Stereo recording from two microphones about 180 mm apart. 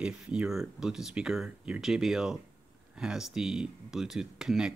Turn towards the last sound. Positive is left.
turn(degrees=-5)  # may be behind; listen again after turning